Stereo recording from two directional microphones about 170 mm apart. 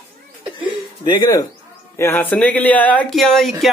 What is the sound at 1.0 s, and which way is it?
Speech, 25° left (ahead or behind).